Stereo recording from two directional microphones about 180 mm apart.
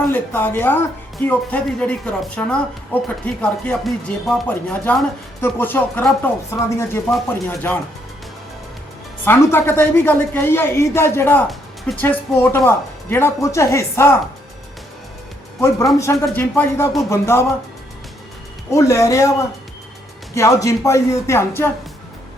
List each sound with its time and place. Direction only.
0.1 s speech: 10° left (ahead or behind)
9.2 s speech: 15° left (ahead or behind)
11.4 s music: centre (ahead or behind)
12.0 s speech: 10° left (ahead or behind)
16.0 s speech: 15° left (ahead or behind)
18.7 s speech: 20° left (ahead or behind)